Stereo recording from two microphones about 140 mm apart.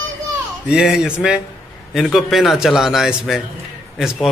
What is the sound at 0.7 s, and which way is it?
A man's voice, 5° right (ahead or behind).